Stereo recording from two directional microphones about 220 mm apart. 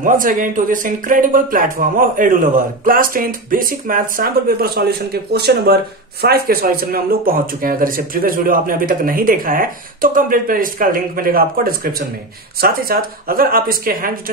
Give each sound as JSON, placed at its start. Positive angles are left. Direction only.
{"t": 0.0, "sound": "speech", "side_deg": -35}